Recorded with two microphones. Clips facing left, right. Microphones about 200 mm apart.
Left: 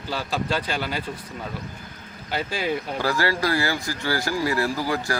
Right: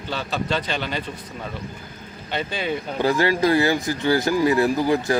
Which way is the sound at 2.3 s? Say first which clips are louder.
Even; 5° left (ahead or behind).